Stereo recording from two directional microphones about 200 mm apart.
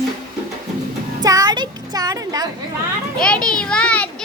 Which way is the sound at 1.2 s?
20° right (ahead or behind).